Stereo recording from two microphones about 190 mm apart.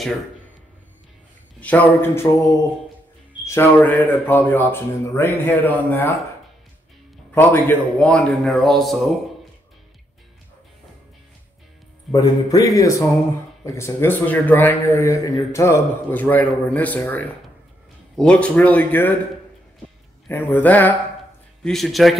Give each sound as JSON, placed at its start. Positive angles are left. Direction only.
{"t": 1.6, "sound": "speech", "side_deg": 10}
{"t": 7.3, "sound": "speech", "side_deg": 10}
{"t": 12.1, "sound": "speech", "side_deg": 20}
{"t": 20.2, "sound": "speech", "side_deg": 10}